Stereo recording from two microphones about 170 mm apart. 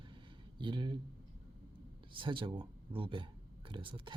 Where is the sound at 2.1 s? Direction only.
30° right (ahead or behind).